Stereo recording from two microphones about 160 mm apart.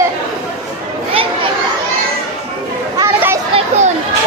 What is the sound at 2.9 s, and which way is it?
Chatter, 15° right (ahead or behind).